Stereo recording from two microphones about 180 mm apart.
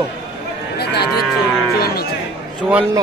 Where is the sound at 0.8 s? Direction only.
65° left (ahead or behind).